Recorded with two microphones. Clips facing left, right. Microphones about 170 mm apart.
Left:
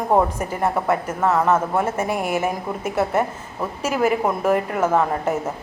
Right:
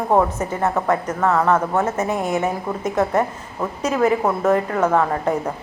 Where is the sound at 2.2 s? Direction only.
25° right (ahead or behind).